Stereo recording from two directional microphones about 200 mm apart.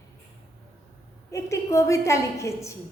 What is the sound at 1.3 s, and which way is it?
A woman's voice, 15° left (ahead or behind).